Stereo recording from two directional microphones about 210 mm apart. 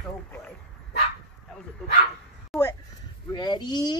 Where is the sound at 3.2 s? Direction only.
20° left (ahead or behind).